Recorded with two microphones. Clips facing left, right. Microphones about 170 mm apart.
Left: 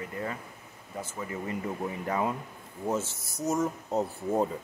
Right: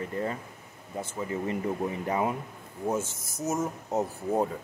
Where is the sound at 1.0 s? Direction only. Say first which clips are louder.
Right 4 dB; 25° right (ahead or behind).